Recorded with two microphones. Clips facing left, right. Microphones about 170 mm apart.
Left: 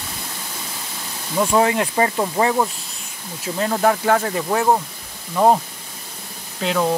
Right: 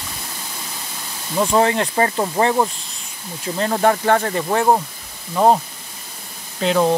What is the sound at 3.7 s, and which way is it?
Speech, centre (ahead or behind).